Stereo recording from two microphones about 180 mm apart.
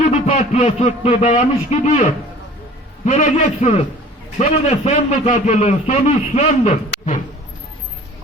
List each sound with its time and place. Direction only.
0.0 s a man's voice: 40° left (ahead or behind)